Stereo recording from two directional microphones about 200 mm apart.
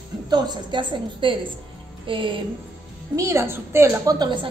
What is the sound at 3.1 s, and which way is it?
A woman's voice, 15° right (ahead or behind).